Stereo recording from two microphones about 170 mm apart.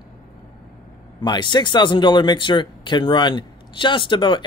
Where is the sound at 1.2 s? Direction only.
25° left (ahead or behind).